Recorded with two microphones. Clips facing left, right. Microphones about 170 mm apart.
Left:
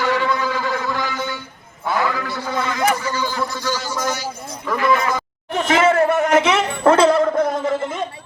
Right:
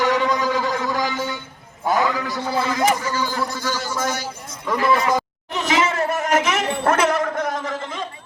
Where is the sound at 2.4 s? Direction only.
30° right (ahead or behind).